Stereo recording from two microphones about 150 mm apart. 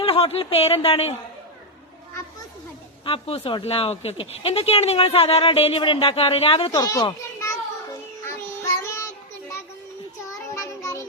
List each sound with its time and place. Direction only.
0.0 s speech: 40° left (ahead or behind)
3.0 s speech: 40° left (ahead or behind)
6.7 s a child's voice: 25° left (ahead or behind)
8.2 s child singing: 20° left (ahead or behind)
10.5 s child singing: 20° left (ahead or behind)